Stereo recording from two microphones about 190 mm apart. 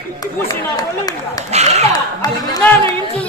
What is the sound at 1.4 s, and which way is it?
Speech, 35° right (ahead or behind).